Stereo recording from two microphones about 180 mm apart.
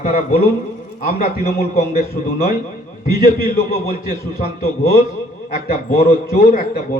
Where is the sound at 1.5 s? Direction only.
55° left (ahead or behind).